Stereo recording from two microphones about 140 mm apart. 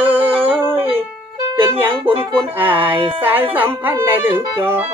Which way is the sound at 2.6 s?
15° right (ahead or behind).